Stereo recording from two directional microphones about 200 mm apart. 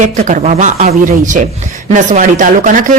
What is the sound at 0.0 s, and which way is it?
Speech, 40° right (ahead or behind).